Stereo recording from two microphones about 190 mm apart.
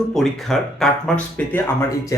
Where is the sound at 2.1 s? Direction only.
15° left (ahead or behind).